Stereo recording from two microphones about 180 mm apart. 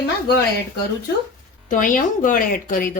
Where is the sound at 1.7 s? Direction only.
50° left (ahead or behind).